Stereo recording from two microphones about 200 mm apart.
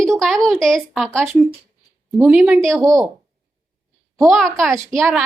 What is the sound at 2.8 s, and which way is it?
Speech, 15° right (ahead or behind).